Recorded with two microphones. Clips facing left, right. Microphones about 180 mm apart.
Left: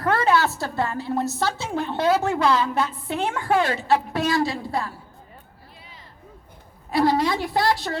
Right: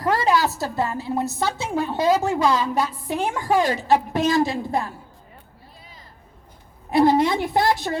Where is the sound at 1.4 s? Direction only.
15° right (ahead or behind).